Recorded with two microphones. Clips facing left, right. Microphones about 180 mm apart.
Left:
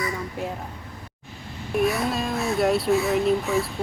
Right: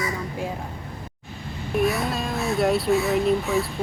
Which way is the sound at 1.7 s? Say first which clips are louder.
Even; centre (ahead or behind).